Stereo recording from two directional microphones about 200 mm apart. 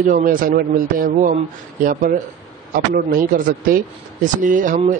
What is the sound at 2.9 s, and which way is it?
Speech, 45° right (ahead or behind).